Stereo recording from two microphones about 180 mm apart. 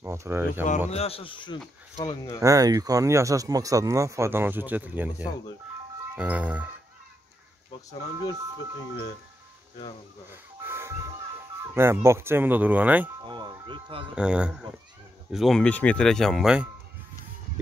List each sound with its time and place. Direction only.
0.0 s speech: 15° right (ahead or behind)
0.8 s a man's voice: 35° left (ahead or behind)
2.4 s speech: 20° right (ahead or behind)
10.3 s music: 10° right (ahead or behind)
11.7 s speech: 15° right (ahead or behind)
13.2 s speech: 25° right (ahead or behind)
14.1 s speech: 5° right (ahead or behind)